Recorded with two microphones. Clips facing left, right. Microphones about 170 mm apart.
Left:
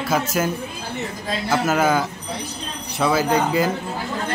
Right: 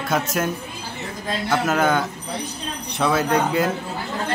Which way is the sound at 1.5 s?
Centre (ahead or behind).